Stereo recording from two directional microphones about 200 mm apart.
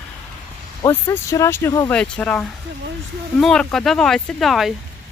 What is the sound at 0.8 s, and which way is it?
Speech, 15° left (ahead or behind).